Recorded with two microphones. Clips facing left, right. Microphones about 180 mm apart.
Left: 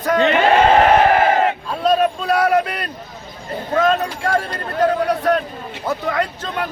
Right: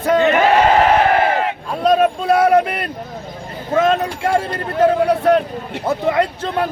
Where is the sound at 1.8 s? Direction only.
25° right (ahead or behind).